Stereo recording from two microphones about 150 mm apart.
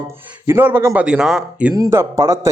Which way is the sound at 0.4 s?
15° right (ahead or behind).